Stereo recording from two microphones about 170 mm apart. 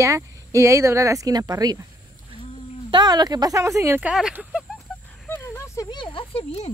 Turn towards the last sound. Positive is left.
turn(degrees=35)  # may be behind; listen again after turning